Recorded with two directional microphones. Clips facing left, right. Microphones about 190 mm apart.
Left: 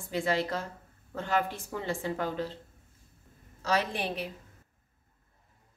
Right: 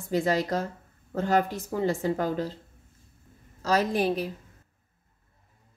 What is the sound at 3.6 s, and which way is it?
Speech, 40° right (ahead or behind).